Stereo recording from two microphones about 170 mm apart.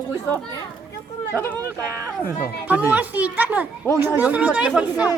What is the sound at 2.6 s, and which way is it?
A child's voice, 10° right (ahead or behind).